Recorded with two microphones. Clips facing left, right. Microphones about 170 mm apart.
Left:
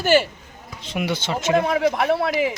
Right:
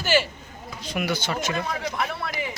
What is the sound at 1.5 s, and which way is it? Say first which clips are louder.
Speech: left 9 dB; 65° left (ahead or behind).